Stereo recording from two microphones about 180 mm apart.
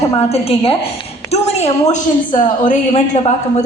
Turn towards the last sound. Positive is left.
turn(degrees=40)  # may be behind; listen again after turning